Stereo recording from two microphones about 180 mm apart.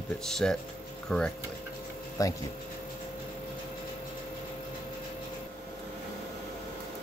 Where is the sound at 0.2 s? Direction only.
5° left (ahead or behind).